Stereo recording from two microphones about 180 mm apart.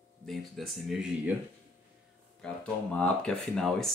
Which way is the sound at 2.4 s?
5° left (ahead or behind).